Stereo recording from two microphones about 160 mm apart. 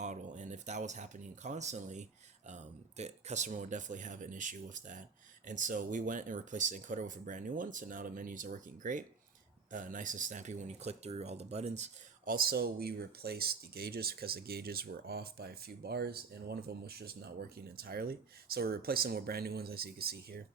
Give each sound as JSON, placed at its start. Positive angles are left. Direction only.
{"t": 0.0, "sound": "speech", "side_deg": -50}
{"t": 12.3, "sound": "speech", "side_deg": -70}